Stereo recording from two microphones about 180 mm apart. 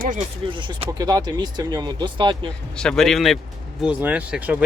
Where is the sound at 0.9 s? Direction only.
20° right (ahead or behind).